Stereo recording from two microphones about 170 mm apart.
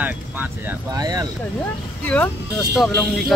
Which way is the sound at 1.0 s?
20° right (ahead or behind).